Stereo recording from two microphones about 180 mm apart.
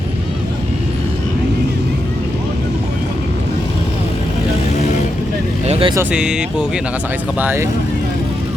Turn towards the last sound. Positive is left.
turn(degrees=-10)  # may be behind; listen again after turning